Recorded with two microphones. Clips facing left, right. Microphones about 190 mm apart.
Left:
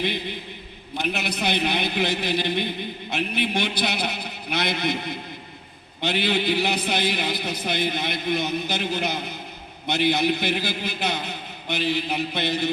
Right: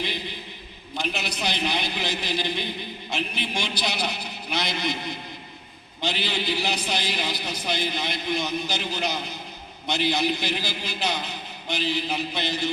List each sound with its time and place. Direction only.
0.9 s a man's voice: 55° left (ahead or behind)